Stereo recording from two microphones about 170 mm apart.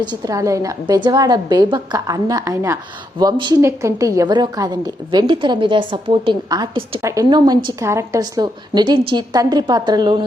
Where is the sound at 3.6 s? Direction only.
15° right (ahead or behind).